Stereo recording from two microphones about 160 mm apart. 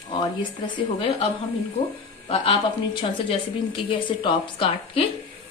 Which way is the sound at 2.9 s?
30° left (ahead or behind).